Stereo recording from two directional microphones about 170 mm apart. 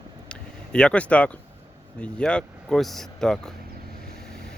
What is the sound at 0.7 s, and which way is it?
Speech, 5° left (ahead or behind).